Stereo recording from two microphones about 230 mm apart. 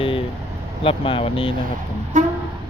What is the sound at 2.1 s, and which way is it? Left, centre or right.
Vehicle, right.